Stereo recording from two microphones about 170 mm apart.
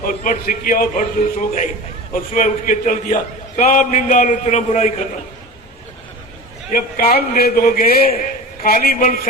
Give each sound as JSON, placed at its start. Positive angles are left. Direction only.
{"t": 0.0, "sound": "a man's voice", "side_deg": 55}
{"t": 6.7, "sound": "a man's voice", "side_deg": 60}